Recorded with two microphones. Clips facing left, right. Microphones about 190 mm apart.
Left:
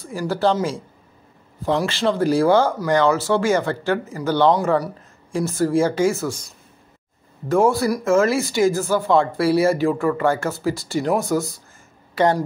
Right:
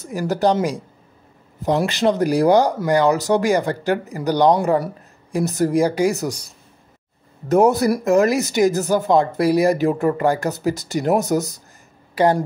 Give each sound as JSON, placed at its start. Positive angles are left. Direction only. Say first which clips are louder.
{"t": 0.0, "sound": "speech", "louder": "right 2 dB", "side_deg": -15}
{"t": 1.6, "sound": "speech", "louder": "right 2 dB", "side_deg": -20}
{"t": 7.4, "sound": "speech", "louder": "right 2 dB", "side_deg": -20}